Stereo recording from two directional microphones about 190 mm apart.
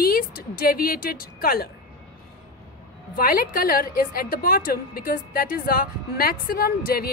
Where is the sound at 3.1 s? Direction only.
50° left (ahead or behind).